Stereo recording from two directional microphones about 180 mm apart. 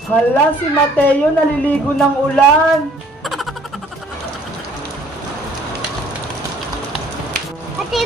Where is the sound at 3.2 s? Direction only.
Centre (ahead or behind).